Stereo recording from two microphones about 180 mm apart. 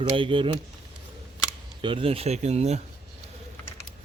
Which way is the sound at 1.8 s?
30° right (ahead or behind).